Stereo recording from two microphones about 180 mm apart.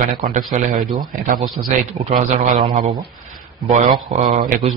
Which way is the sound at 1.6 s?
35° right (ahead or behind).